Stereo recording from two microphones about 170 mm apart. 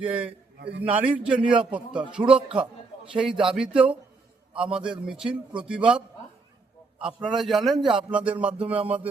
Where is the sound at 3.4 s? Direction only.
5° right (ahead or behind).